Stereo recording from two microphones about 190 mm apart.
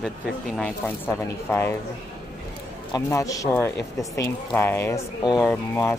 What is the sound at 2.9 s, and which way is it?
Speech, 15° left (ahead or behind).